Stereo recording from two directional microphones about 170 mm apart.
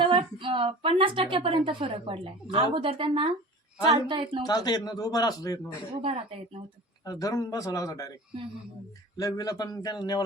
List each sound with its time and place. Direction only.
0.1 s a woman's voice: 30° right (ahead or behind)
4.4 s a man's voice: 25° left (ahead or behind)
6.0 s a woman's voice: 35° right (ahead or behind)
7.0 s a man's voice: 20° left (ahead or behind)
9.1 s a man's voice: 20° left (ahead or behind)